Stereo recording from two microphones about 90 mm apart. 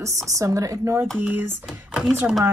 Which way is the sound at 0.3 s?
35° right (ahead or behind).